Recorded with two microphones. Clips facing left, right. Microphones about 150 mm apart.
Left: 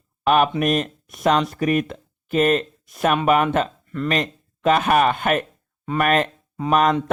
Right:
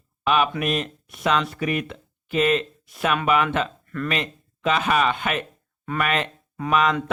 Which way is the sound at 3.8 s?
20° left (ahead or behind).